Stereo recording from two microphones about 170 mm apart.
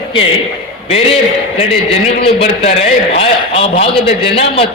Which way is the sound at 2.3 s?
35° left (ahead or behind).